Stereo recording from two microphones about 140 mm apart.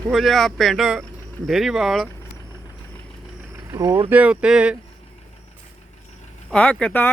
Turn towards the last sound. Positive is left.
turn(degrees=10)  # may be behind; listen again after turning